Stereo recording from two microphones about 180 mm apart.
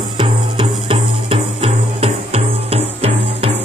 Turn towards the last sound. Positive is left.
turn(degrees=-35)  # may be behind; listen again after turning